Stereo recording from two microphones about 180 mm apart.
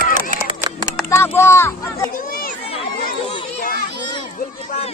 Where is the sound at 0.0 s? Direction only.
50° right (ahead or behind).